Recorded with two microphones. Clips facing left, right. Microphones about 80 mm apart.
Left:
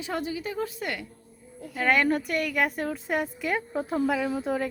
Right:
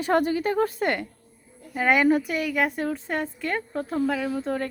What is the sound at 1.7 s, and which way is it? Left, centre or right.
A woman's voice, centre.